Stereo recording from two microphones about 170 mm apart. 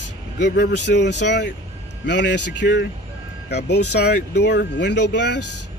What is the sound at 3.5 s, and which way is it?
Speech, 75° left (ahead or behind).